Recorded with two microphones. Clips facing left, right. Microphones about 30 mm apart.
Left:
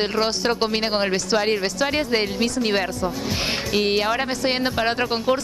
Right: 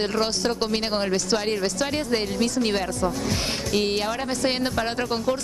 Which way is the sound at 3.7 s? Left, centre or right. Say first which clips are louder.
Left 3 dB; centre.